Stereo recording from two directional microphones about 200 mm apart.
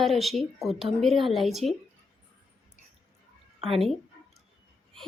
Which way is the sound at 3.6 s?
30° right (ahead or behind).